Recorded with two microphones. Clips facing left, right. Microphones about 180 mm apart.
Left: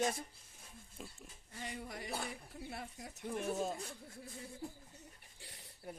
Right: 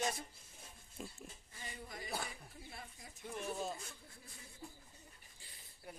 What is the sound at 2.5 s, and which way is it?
Speech, 65° left (ahead or behind).